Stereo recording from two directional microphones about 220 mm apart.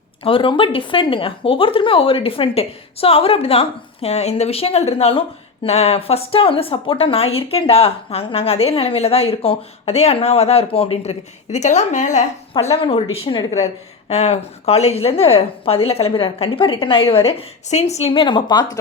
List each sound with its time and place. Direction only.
0.3 s speech: 25° left (ahead or behind)